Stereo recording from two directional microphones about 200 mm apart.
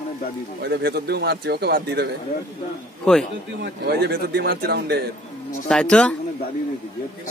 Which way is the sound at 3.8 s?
55° right (ahead or behind).